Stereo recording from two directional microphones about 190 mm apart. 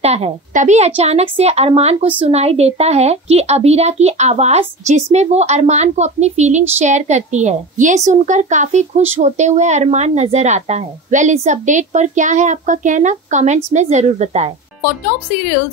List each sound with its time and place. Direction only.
0.0 s a woman's voice: 35° right (ahead or behind)